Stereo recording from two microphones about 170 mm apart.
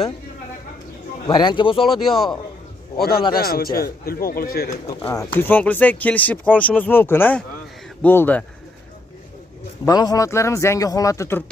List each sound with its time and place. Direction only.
1.2 s speech: 25° left (ahead or behind)
2.0 s a man's voice: centre (ahead or behind)
3.0 s speech: 65° left (ahead or behind)
5.0 s speech: 10° left (ahead or behind)
9.8 s speech: 20° left (ahead or behind)